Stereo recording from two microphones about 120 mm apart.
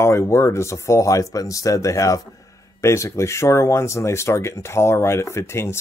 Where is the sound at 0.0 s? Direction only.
20° left (ahead or behind).